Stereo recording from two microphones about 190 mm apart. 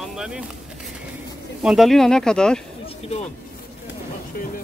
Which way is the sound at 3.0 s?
35° left (ahead or behind).